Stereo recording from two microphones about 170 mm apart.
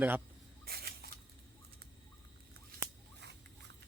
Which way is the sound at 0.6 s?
65° right (ahead or behind).